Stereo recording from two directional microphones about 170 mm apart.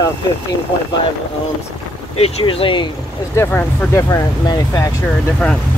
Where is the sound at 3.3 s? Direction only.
15° left (ahead or behind).